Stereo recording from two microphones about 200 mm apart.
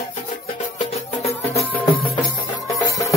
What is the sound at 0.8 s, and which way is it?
Music, 30° left (ahead or behind).